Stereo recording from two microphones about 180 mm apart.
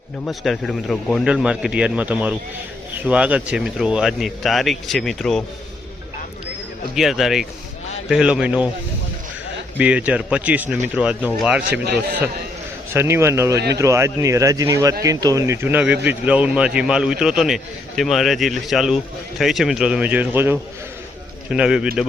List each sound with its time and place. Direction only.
0.3 s speech: centre (ahead or behind)
6.9 s speech: centre (ahead or behind)
9.7 s speech: 10° right (ahead or behind)
11.7 s a man's voice: 65° right (ahead or behind)
12.9 s speech: 15° right (ahead or behind)